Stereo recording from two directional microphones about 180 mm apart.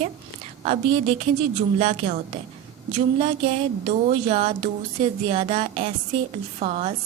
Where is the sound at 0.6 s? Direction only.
35° right (ahead or behind).